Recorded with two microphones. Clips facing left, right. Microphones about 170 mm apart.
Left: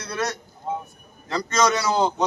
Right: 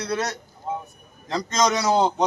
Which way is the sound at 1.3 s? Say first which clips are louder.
Left 1 dB; 15° right (ahead or behind).